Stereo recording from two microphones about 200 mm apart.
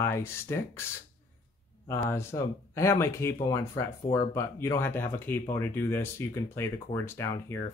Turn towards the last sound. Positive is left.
turn(degrees=15)  # may be behind; listen again after turning